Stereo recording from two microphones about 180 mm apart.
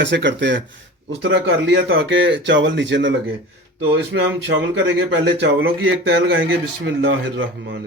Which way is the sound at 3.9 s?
80° right.